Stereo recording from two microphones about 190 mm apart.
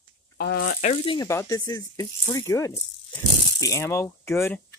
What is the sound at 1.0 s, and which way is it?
Speech, 15° left (ahead or behind).